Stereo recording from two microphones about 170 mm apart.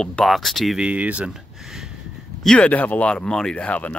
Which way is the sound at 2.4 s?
10° left (ahead or behind).